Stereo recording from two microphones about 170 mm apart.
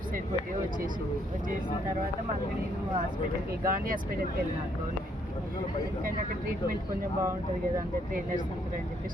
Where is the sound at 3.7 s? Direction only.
55° right (ahead or behind).